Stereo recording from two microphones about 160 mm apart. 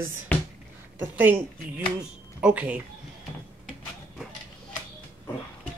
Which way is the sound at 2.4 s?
10° right (ahead or behind).